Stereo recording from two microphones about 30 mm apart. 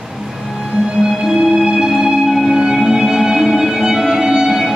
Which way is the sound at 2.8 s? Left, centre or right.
Right.